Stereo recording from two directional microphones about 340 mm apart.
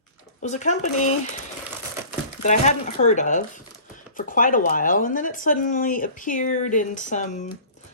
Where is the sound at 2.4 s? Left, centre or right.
Left.